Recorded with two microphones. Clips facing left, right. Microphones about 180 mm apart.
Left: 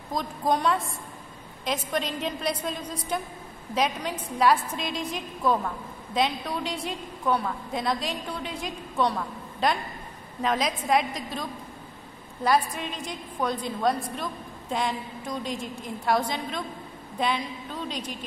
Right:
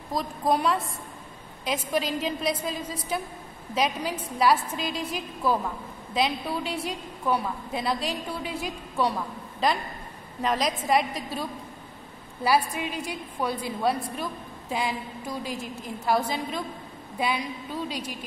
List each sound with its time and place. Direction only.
0.1 s a woman's voice: 5° right (ahead or behind)
12.4 s a woman's voice: 10° right (ahead or behind)